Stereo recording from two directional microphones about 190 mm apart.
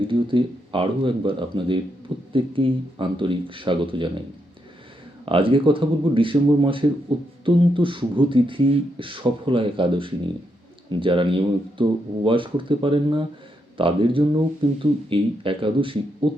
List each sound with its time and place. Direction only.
0.0 s speech: 25° right (ahead or behind)
5.2 s speech: 30° right (ahead or behind)